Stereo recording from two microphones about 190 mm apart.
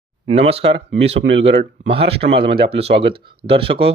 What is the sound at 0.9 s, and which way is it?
Speech, 75° right (ahead or behind).